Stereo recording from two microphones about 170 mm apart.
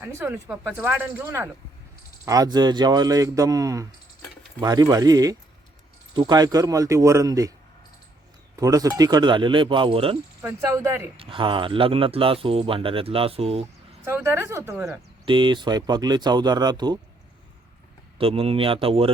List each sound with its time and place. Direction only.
0.0 s speech: 15° right (ahead or behind)
8.5 s speech: 20° right (ahead or behind)
10.4 s speech: 15° right (ahead or behind)
11.2 s speech: 30° right (ahead or behind)
14.0 s speech: 15° right (ahead or behind)
15.3 s speech: 30° right (ahead or behind)
18.2 s speech: 35° right (ahead or behind)